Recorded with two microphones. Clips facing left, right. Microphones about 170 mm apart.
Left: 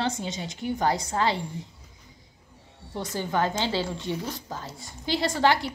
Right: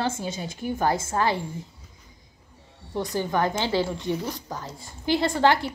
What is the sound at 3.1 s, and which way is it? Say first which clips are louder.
Speech: right 1 dB; 15° right (ahead or behind).